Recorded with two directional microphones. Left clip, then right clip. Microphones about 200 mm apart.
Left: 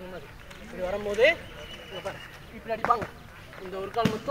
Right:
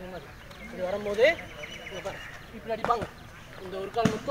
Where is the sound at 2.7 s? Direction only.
25° right (ahead or behind).